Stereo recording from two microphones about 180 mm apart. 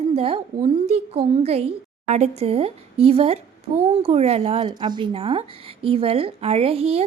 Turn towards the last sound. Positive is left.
turn(degrees=-35)  # may be behind; listen again after turning